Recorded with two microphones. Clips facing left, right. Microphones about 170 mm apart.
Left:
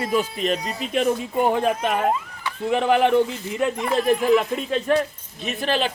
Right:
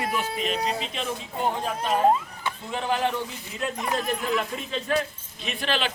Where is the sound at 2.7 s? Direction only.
70° left (ahead or behind).